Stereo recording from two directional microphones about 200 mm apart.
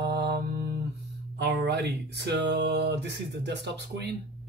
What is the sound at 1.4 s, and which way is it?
Speech, 60° right (ahead or behind).